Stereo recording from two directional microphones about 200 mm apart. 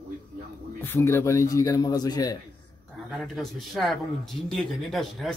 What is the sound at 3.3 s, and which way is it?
A man's voice, centre (ahead or behind).